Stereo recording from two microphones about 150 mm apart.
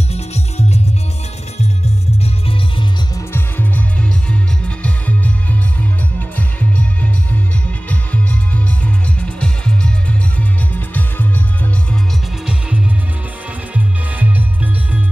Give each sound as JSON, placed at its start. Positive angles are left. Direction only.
{"t": 0.1, "sound": "music", "side_deg": 45}
{"t": 2.2, "sound": "music", "side_deg": 40}
{"t": 3.3, "sound": "music", "side_deg": 15}
{"t": 7.9, "sound": "music", "side_deg": 10}
{"t": 13.7, "sound": "music", "side_deg": -10}